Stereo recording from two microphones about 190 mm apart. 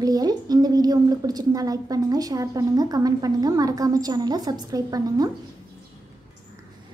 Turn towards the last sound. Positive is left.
turn(degrees=-20)  # may be behind; listen again after turning